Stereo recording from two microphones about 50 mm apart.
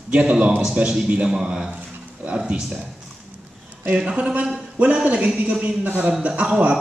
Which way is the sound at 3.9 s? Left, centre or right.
Right.